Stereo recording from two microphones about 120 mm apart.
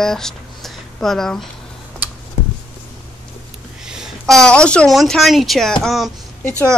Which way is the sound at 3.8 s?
Centre (ahead or behind).